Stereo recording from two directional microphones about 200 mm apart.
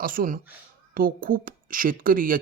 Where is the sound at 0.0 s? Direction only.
45° right (ahead or behind).